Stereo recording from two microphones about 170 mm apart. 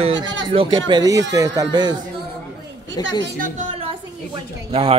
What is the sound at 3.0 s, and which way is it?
Speech, 25° left (ahead or behind).